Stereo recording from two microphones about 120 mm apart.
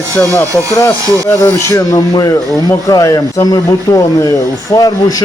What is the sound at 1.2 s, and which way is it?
Speech, 25° left (ahead or behind).